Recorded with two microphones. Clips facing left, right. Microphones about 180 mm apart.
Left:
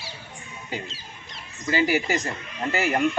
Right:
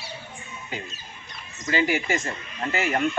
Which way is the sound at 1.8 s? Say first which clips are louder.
Left 2 dB; 40° left (ahead or behind).